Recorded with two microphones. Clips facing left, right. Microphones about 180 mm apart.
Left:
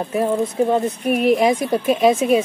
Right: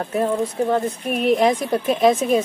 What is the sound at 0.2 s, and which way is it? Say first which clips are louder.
Speech: left 2 dB; 10° left (ahead or behind).